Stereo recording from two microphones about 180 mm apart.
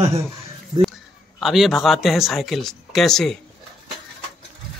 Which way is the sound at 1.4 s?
Centre (ahead or behind).